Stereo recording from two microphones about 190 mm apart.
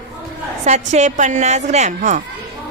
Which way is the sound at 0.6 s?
40° right (ahead or behind).